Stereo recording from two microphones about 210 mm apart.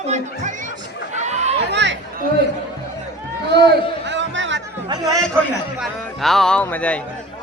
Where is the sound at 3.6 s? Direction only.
60° right (ahead or behind).